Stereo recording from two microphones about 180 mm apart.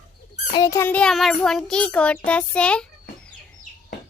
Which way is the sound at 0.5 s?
20° left (ahead or behind).